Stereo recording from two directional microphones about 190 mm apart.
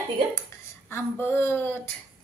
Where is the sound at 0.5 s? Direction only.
15° left (ahead or behind).